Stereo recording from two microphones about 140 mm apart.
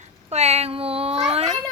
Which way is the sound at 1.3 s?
50° right (ahead or behind).